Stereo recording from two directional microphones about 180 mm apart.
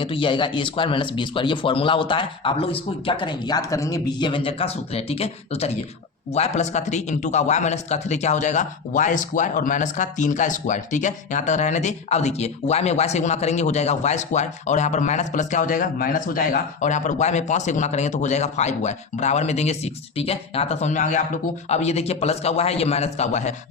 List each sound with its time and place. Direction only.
0.0 s a man's voice: 30° left (ahead or behind)